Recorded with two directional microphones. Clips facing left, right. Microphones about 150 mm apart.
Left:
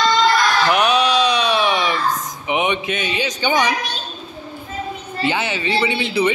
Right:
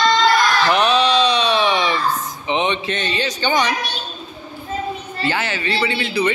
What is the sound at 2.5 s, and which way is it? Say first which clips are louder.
Music: even; 10° left (ahead or behind).